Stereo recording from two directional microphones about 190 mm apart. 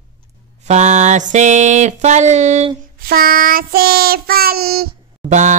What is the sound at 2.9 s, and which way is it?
Child singing, 50° right (ahead or behind).